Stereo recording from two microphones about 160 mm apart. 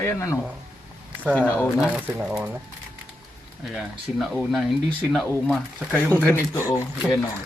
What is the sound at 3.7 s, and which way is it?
Speech, centre (ahead or behind).